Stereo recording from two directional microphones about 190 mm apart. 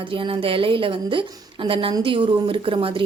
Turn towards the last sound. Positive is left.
turn(degrees=-30)  # may be behind; listen again after turning